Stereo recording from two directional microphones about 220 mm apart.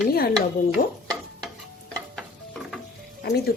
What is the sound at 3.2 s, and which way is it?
Speech, 45° left (ahead or behind).